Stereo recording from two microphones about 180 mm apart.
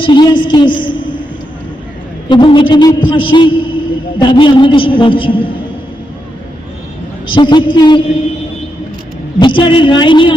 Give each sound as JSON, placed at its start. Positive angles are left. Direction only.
{"t": 0.0, "sound": "a woman's voice", "side_deg": 25}
{"t": 2.3, "sound": "a man's voice", "side_deg": 25}
{"t": 7.3, "sound": "a man's voice", "side_deg": 25}
{"t": 9.4, "sound": "a man's voice", "side_deg": 25}